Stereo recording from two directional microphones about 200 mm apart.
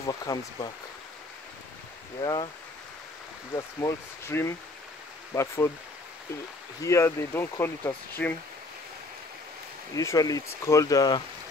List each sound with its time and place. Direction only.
0.0 s speech: 20° left (ahead or behind)
2.2 s speech: 25° left (ahead or behind)
3.5 s speech: 15° left (ahead or behind)
6.8 s speech: 15° left (ahead or behind)
9.9 s speech: 15° left (ahead or behind)